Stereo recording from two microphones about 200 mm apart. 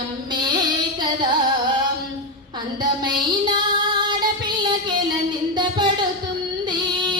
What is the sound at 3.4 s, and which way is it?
Female singing, 25° right (ahead or behind).